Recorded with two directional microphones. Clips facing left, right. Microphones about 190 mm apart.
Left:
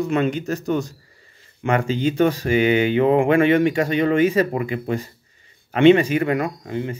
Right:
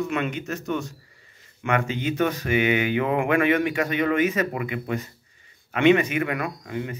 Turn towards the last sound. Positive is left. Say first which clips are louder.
# left 4 dB
turn(degrees=30)  # may be behind; listen again after turning